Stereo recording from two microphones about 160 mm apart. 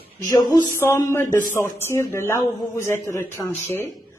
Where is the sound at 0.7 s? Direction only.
20° left (ahead or behind).